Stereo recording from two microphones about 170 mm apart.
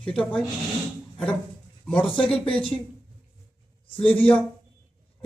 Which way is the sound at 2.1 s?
30° left (ahead or behind).